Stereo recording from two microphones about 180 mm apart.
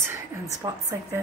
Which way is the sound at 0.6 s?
20° right (ahead or behind).